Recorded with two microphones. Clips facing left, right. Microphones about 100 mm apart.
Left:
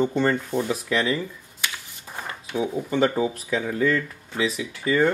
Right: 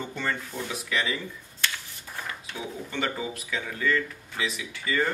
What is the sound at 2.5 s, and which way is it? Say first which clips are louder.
Speech: left 11 dB; 35° left (ahead or behind).